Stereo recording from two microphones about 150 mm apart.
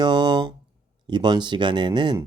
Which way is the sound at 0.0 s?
30° right (ahead or behind).